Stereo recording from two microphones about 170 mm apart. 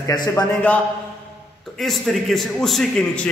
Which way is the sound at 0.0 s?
20° left (ahead or behind).